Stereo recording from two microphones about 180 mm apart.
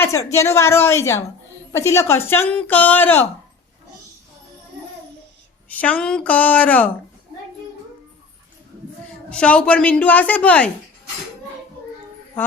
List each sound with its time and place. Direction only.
0.0 s speech: 15° left (ahead or behind)
5.6 s speech: 10° left (ahead or behind)
9.3 s speech: 5° left (ahead or behind)